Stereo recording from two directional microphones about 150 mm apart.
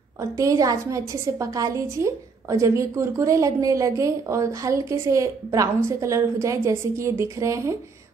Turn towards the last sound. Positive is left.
turn(degrees=-20)  # may be behind; listen again after turning